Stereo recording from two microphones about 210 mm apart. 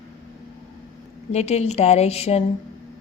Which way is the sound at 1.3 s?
30° left (ahead or behind).